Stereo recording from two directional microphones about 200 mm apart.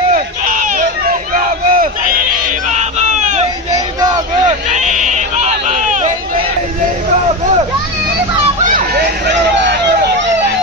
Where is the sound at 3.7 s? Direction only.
20° right (ahead or behind).